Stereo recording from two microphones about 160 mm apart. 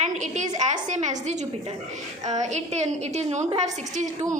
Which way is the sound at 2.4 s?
45° right (ahead or behind).